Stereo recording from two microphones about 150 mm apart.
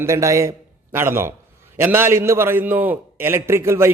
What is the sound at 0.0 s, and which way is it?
A man's voice, 20° right (ahead or behind).